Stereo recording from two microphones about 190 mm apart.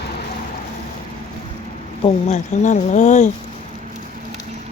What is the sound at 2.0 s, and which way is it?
Speech, 40° left (ahead or behind).